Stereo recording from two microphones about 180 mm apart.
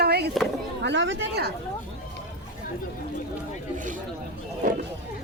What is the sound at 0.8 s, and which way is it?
Speech, 85° right.